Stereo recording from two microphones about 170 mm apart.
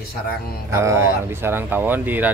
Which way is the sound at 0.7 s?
15° right (ahead or behind).